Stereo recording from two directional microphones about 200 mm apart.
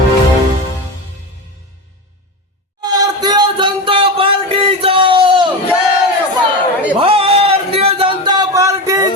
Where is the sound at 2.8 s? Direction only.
20° right (ahead or behind).